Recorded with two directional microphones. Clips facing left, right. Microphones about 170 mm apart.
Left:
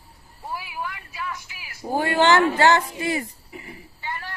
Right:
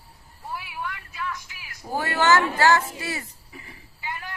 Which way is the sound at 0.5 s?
5° left (ahead or behind).